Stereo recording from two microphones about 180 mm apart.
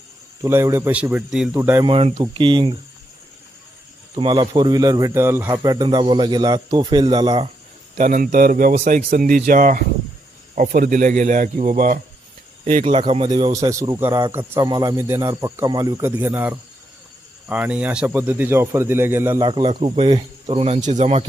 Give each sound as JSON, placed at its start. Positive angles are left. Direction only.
{"t": 0.4, "sound": "speech", "side_deg": -15}
{"t": 1.8, "sound": "speech", "side_deg": -30}
{"t": 4.1, "sound": "speech", "side_deg": -25}
{"t": 7.9, "sound": "a man's voice", "side_deg": -45}
{"t": 12.8, "sound": "speech", "side_deg": -30}
{"t": 19.4, "sound": "speech", "side_deg": -25}